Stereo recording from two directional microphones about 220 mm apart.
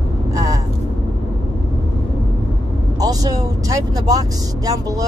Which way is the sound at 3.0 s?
15° right (ahead or behind).